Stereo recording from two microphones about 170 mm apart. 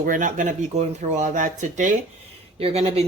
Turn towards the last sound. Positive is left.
turn(degrees=-35)  # may be behind; listen again after turning